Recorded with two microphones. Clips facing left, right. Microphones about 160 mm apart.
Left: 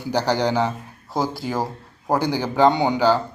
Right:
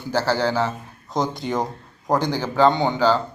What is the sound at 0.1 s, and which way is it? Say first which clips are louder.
A man's voice: left 1 dB; 15° left (ahead or behind).